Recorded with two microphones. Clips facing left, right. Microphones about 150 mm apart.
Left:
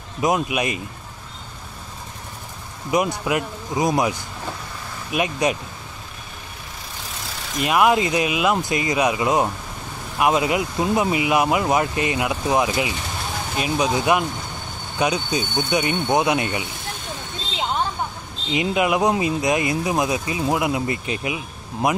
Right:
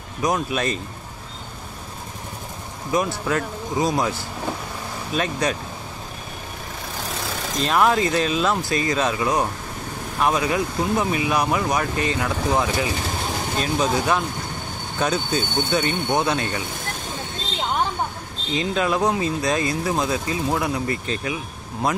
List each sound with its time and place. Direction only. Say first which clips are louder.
0.2 s speech: left 2 dB; 15° left (ahead or behind)
2.9 s speech: left 1 dB; 20° left (ahead or behind)
7.5 s speech: left 2 dB; 10° left (ahead or behind)
18.5 s speech: left 2 dB; 15° left (ahead or behind)